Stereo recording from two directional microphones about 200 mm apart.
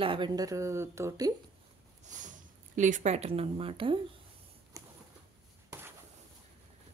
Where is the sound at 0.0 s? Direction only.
25° right (ahead or behind).